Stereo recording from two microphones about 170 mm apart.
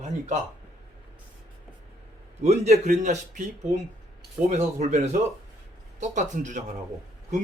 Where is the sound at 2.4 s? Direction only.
40° right (ahead or behind).